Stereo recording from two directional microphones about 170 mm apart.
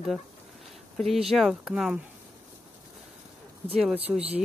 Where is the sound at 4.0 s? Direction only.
35° right (ahead or behind).